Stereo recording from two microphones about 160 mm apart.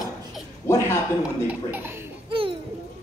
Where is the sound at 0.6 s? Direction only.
15° left (ahead or behind).